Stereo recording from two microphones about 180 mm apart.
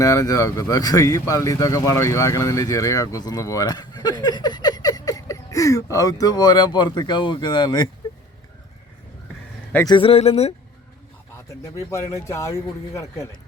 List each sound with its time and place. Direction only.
0.0 s speech: 20° left (ahead or behind)
9.8 s speech: 25° left (ahead or behind)
11.4 s speech: 15° left (ahead or behind)